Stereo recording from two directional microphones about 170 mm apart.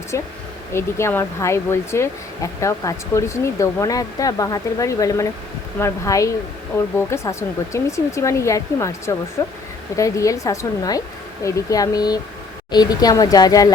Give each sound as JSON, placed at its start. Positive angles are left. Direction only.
{"t": 0.1, "sound": "a woman's voice", "side_deg": 20}